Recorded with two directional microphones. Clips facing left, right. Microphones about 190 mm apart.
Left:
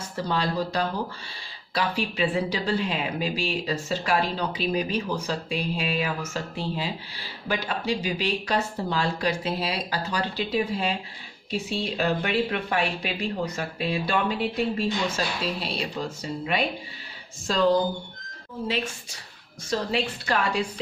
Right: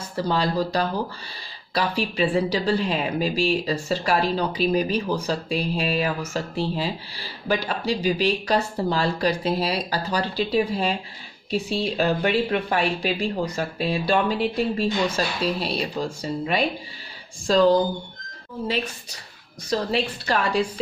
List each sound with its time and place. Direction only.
0.1 s speech: 35° right (ahead or behind)
19.7 s speech: 35° right (ahead or behind)